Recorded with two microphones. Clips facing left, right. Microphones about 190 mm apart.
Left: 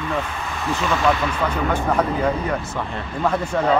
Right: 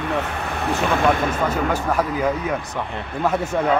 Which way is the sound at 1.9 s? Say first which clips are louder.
Left 1 dB; 5° right (ahead or behind).